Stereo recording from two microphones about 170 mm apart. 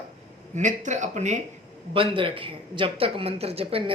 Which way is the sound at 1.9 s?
30° right (ahead or behind).